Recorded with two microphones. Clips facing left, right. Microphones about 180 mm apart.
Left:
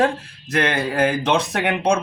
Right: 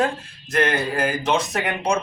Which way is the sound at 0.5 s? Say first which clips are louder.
Left 1 dB; 70° left (ahead or behind).